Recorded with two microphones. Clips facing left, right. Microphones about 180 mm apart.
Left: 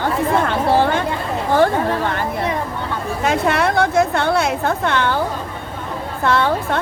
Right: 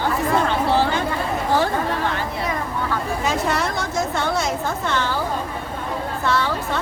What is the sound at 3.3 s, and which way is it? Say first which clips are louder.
A woman's voice: left 6 dB; 60° left (ahead or behind).